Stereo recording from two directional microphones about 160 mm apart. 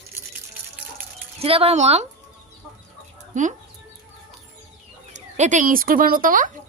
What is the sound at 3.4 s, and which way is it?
Speech, 50° right (ahead or behind).